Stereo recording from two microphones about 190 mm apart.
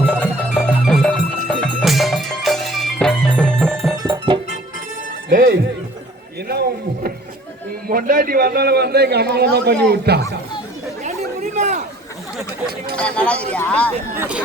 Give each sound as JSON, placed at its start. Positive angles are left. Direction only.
{"t": 0.5, "sound": "music", "side_deg": 0}
{"t": 3.9, "sound": "music", "side_deg": -20}
{"t": 5.3, "sound": "music", "side_deg": -55}
{"t": 6.5, "sound": "a sound", "side_deg": -55}
{"t": 7.9, "sound": "a man's voice", "side_deg": -50}
{"t": 11.5, "sound": "a sound", "side_deg": -40}
{"t": 13.0, "sound": "speech", "side_deg": 5}
{"t": 14.2, "sound": "speech", "side_deg": -5}